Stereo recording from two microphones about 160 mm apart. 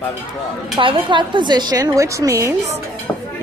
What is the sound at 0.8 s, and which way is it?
A woman's voice, 30° right (ahead or behind).